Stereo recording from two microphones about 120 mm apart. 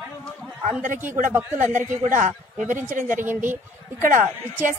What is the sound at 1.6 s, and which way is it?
A man's voice, 90° right.